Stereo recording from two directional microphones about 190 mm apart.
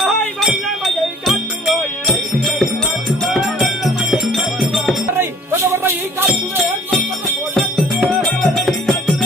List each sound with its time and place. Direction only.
0.0 s music: centre (ahead or behind)
3.3 s music: centre (ahead or behind)
5.1 s music: 10° right (ahead or behind)
7.5 s music: centre (ahead or behind)